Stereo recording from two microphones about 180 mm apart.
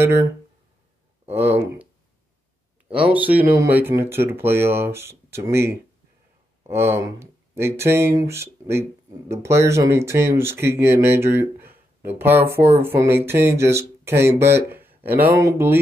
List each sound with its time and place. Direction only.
0.0 s speech: 15° right (ahead or behind)
1.3 s speech: 10° right (ahead or behind)
3.1 s speech: 10° right (ahead or behind)